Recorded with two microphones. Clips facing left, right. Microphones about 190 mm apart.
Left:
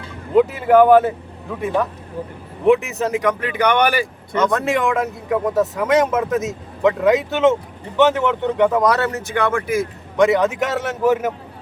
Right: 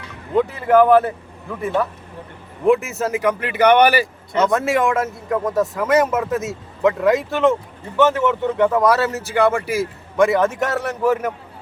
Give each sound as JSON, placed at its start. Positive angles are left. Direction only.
{"t": 0.6, "sound": "speech", "side_deg": 0}